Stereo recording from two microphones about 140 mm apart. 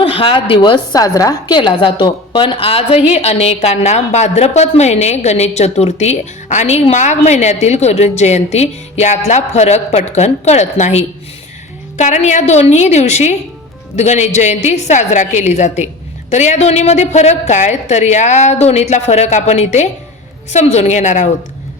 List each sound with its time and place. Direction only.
0.0 s a woman's voice: 40° left (ahead or behind); by 21.2 s 60° left (ahead or behind)